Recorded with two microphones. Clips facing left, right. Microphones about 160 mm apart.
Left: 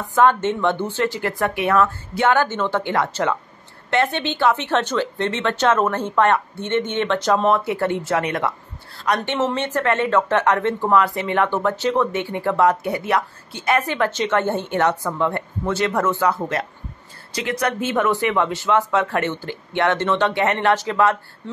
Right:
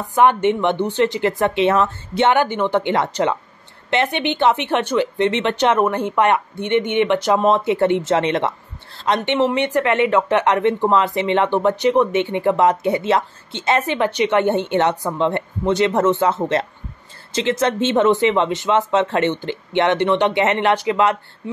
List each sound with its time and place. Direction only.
0.1 s speech: 15° right (ahead or behind)